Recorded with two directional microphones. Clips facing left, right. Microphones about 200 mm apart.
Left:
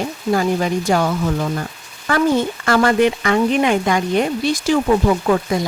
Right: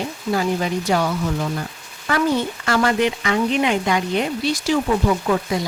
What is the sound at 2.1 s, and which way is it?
Speech, 50° left (ahead or behind).